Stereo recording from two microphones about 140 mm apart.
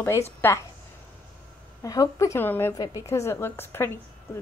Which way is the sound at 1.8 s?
25° left (ahead or behind).